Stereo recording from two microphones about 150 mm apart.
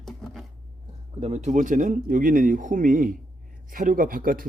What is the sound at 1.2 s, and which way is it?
A man's voice, 50° right (ahead or behind).